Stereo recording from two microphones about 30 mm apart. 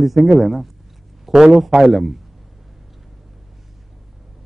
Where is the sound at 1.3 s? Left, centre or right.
Right.